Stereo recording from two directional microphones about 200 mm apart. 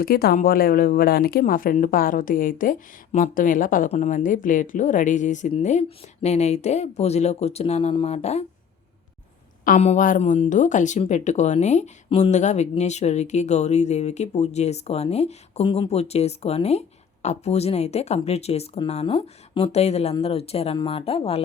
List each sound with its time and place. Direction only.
0.0 s speech: 50° left (ahead or behind); by 8.4 s 35° left (ahead or behind)
9.6 s speech: 35° left (ahead or behind)